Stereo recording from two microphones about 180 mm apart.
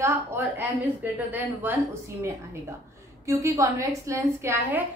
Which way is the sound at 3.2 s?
15° right (ahead or behind).